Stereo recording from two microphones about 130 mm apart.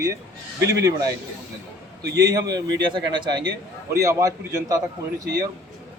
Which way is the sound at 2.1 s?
30° right (ahead or behind).